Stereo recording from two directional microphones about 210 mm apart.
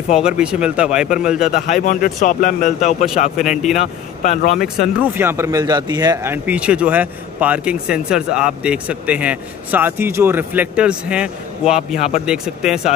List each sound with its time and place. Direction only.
0.1 s speech: 5° right (ahead or behind)
1.5 s speech: 40° left (ahead or behind)
4.6 s speech: 5° right (ahead or behind)
11.9 s speech: 35° left (ahead or behind)
12.3 s speech: 5° right (ahead or behind)